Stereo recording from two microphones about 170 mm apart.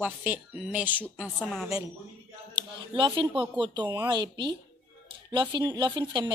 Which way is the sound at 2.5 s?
25° right (ahead or behind).